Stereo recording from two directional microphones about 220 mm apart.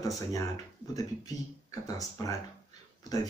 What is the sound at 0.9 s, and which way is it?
Speech, 15° left (ahead or behind).